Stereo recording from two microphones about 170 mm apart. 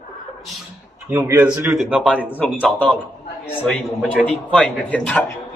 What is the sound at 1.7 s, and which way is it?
A man's voice, centre (ahead or behind).